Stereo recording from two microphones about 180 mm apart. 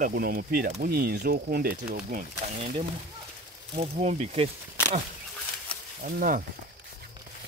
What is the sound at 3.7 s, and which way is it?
Speech, 40° right (ahead or behind).